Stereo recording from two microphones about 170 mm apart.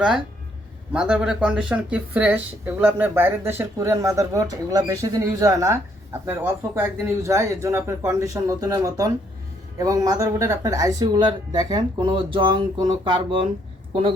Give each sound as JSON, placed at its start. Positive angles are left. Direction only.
{"t": 0.9, "sound": "speech", "side_deg": -5}